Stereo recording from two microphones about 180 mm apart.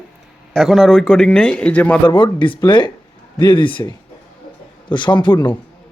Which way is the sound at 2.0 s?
25° left (ahead or behind).